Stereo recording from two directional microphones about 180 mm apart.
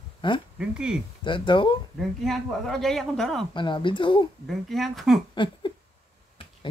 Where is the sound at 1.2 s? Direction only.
25° left (ahead or behind).